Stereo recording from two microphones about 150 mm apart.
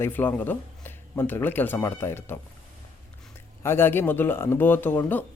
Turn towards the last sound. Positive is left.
turn(degrees=15)  # may be behind; listen again after turning